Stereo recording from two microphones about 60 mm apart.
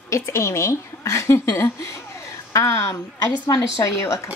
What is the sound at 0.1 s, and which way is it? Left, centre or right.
A woman's voice, left.